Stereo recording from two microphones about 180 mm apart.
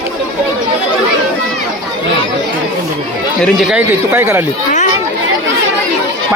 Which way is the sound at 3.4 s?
Centre (ahead or behind).